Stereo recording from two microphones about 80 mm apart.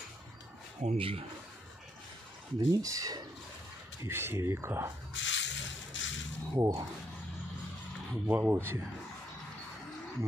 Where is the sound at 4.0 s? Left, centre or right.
Right.